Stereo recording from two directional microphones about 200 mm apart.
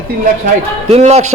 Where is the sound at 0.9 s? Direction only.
30° right (ahead or behind).